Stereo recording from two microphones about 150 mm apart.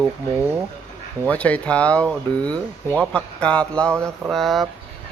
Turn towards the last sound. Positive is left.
turn(degrees=0)  # may be behind; listen again after turning